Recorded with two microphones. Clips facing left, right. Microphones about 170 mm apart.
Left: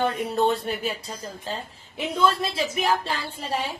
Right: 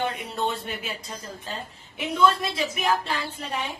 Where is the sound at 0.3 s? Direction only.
40° left (ahead or behind).